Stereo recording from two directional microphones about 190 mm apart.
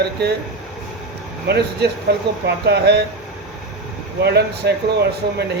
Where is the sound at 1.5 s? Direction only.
60° right (ahead or behind).